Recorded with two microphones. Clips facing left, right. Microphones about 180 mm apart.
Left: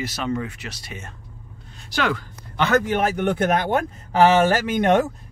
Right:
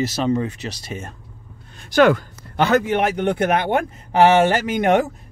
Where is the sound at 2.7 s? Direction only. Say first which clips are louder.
Right 1 dB; 15° right (ahead or behind).